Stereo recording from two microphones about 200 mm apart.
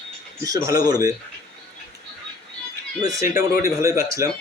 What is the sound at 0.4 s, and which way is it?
Speech, 15° right (ahead or behind).